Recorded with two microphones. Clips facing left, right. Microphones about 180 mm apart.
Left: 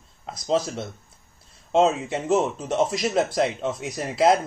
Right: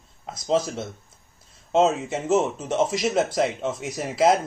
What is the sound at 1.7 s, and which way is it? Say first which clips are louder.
Speech: even; 5° right (ahead or behind).